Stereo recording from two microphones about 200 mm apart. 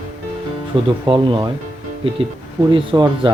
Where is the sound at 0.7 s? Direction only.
25° right (ahead or behind).